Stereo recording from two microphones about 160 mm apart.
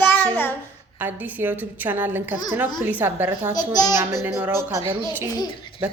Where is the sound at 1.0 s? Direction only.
10° right (ahead or behind).